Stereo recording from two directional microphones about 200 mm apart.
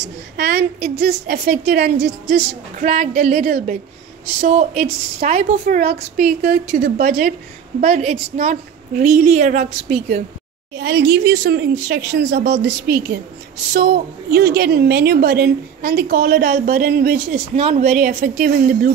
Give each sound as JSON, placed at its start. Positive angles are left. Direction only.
{"t": 0.4, "sound": "a woman's voice", "side_deg": -55}
{"t": 4.4, "sound": "a woman's voice", "side_deg": -35}
{"t": 7.8, "sound": "a woman's voice", "side_deg": -30}
{"t": 10.8, "sound": "a woman's voice", "side_deg": -55}
{"t": 17.3, "sound": "a woman's voice", "side_deg": -35}